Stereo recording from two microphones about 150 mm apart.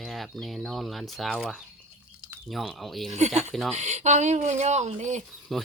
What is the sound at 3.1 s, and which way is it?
Speech, 50° right (ahead or behind).